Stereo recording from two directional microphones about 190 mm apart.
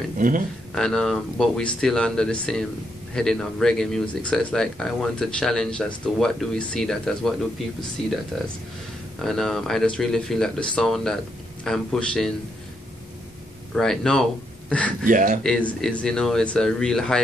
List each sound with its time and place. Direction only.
0.7 s speech: 5° left (ahead or behind)
9.2 s speech: centre (ahead or behind)
13.7 s speech: centre (ahead or behind)
15.0 s speech: 45° right (ahead or behind)
15.4 s speech: 5° left (ahead or behind)